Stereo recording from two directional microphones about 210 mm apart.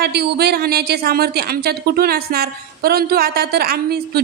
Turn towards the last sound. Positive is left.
turn(degrees=-45)  # may be behind; listen again after turning